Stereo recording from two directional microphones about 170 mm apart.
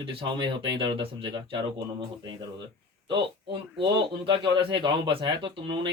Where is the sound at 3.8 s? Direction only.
25° right (ahead or behind).